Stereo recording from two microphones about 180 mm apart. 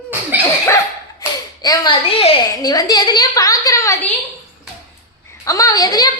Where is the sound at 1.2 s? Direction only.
20° left (ahead or behind).